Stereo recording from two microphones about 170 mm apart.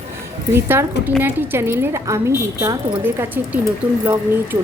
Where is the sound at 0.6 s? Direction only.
15° right (ahead or behind).